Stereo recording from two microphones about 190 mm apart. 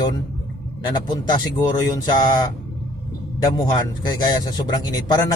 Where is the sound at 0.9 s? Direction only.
20° left (ahead or behind).